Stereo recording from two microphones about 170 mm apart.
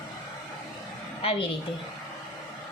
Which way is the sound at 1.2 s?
35° left (ahead or behind).